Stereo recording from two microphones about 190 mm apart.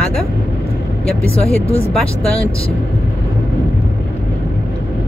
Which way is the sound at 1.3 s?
30° left (ahead or behind).